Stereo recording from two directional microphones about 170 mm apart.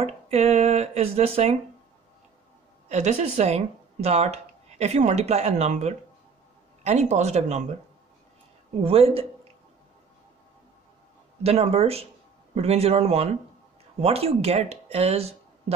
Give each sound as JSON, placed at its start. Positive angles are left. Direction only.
{"t": 0.0, "sound": "speech", "side_deg": -35}
{"t": 2.9, "sound": "speech", "side_deg": -40}
{"t": 8.8, "sound": "speech", "side_deg": -35}
{"t": 11.4, "sound": "speech", "side_deg": -35}